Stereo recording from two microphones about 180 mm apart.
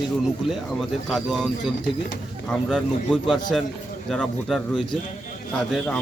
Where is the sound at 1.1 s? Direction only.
Centre (ahead or behind).